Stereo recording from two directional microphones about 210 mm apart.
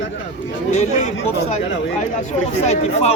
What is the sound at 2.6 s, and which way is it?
Speech, 30° left (ahead or behind).